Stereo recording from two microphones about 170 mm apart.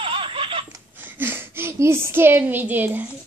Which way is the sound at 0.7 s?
10° right (ahead or behind).